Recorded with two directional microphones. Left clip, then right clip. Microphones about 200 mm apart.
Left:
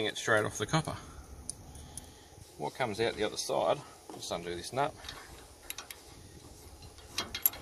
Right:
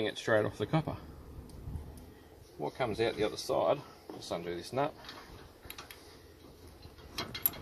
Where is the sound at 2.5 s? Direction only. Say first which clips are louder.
Even; 10° left (ahead or behind).